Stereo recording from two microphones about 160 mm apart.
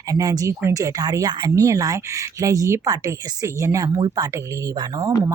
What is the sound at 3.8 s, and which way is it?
Speech, 35° right (ahead or behind).